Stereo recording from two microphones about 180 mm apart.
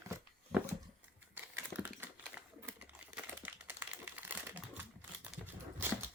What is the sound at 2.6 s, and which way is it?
Crumpling, 5° right (ahead or behind).